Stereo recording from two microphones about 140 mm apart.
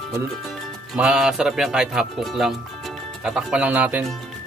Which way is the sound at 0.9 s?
5° right (ahead or behind).